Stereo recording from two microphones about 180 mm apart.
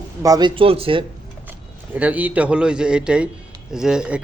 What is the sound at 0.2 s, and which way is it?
Speech, 20° right (ahead or behind).